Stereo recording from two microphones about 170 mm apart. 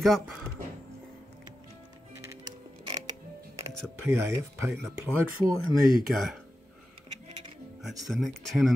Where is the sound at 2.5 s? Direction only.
25° right (ahead or behind).